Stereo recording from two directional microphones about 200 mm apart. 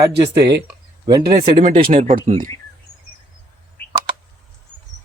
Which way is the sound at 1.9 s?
40° right (ahead or behind).